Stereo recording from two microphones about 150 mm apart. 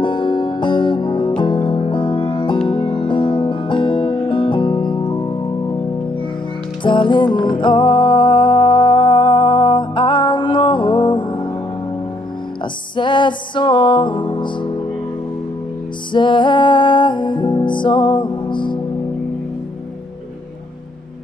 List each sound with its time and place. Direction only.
0.0 s music: 30° left (ahead or behind)
6.8 s music: 30° left (ahead or behind)
12.9 s music: 30° left (ahead or behind)
16.1 s music: 30° left (ahead or behind)